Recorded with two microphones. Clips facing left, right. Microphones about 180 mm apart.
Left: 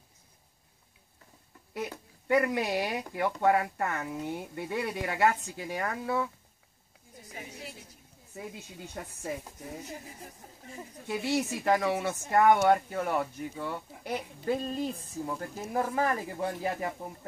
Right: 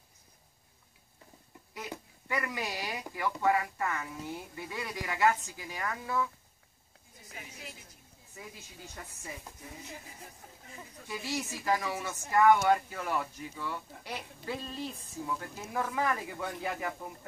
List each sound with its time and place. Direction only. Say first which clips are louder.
1.7 s speech: left 6 dB; 55° left (ahead or behind)
7.3 s a sound: left 4 dB; 35° left (ahead or behind)
8.5 s speech: left 6 dB; 50° left (ahead or behind)
11.3 s speech: left 4 dB; 60° left (ahead or behind); by 17.1 s 30° left (ahead or behind)